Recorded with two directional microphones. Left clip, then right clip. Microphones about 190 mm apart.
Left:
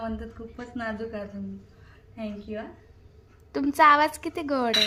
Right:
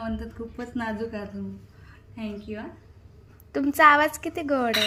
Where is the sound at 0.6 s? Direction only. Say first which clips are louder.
Right 2 dB; 5° left (ahead or behind).